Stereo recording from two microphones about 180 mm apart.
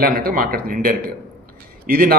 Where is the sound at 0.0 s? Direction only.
55° right (ahead or behind).